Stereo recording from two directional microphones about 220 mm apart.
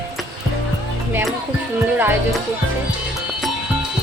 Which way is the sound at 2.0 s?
10° right (ahead or behind).